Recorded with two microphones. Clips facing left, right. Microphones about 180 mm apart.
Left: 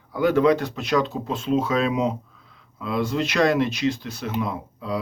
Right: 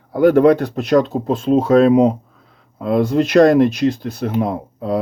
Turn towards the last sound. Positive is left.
turn(degrees=-50)  # may be behind; listen again after turning